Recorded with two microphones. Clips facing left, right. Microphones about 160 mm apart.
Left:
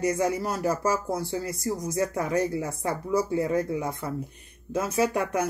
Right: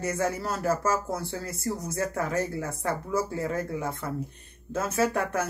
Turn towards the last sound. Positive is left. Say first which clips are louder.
# left 1 dB
turn(degrees=15)  # may be behind; listen again after turning